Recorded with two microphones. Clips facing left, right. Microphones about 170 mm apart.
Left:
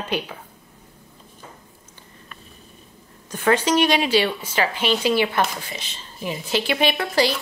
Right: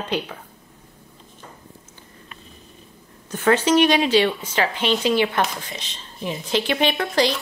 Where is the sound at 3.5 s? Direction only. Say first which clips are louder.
Right 3 dB; 10° left (ahead or behind).